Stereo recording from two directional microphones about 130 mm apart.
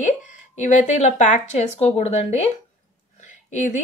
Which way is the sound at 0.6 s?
65° left (ahead or behind).